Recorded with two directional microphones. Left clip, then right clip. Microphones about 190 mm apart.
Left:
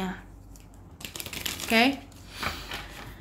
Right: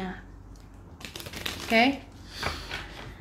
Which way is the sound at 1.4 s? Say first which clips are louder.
Even; 15° left (ahead or behind).